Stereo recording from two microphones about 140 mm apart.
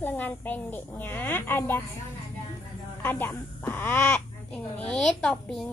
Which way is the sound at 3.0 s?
15° left (ahead or behind).